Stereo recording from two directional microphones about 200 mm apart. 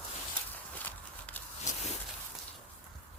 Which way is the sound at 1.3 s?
10° left (ahead or behind).